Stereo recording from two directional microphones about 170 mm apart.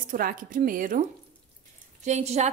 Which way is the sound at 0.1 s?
55° right (ahead or behind).